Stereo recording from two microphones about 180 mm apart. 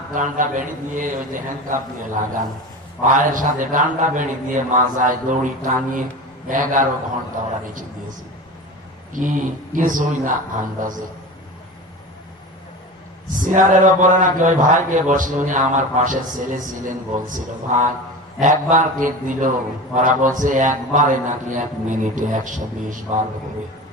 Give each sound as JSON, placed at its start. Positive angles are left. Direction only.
{"t": 0.1, "sound": "speech", "side_deg": -45}
{"t": 3.0, "sound": "speech", "side_deg": -45}
{"t": 9.1, "sound": "speech", "side_deg": -45}
{"t": 13.3, "sound": "speech", "side_deg": -45}